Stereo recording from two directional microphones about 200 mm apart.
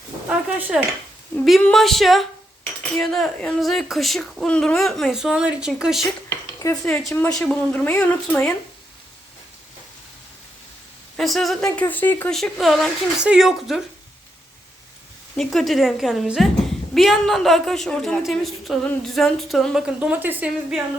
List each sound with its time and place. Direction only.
0.3 s a woman's voice: 5° right (ahead or behind)
6.2 s a sound: 15° left (ahead or behind)
7.1 s a woman's voice: 15° left (ahead or behind)
11.2 s a woman's voice: centre (ahead or behind)
15.4 s a woman's voice: centre (ahead or behind)